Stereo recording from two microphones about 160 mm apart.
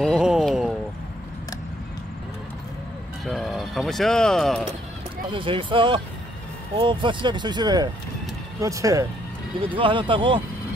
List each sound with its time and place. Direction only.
0.0 s a sound: 5° right (ahead or behind)
3.3 s vehicle: centre (ahead or behind)
5.3 s speech: 35° right (ahead or behind)
9.8 s speech: 30° right (ahead or behind)